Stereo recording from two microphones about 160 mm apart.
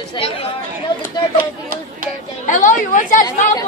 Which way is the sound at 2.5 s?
55° left (ahead or behind).